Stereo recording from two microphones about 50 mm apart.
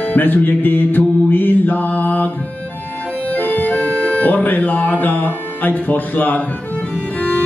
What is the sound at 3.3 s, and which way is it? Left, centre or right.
Accordion, left.